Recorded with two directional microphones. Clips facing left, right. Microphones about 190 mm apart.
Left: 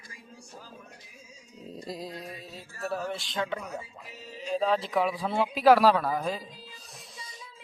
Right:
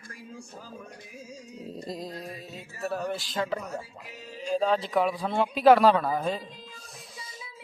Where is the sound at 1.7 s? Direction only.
Centre (ahead or behind).